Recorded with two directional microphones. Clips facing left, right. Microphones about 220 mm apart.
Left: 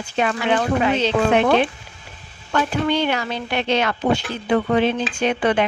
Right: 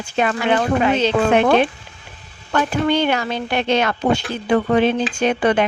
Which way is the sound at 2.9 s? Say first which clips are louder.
Right 3 dB; 50° right (ahead or behind).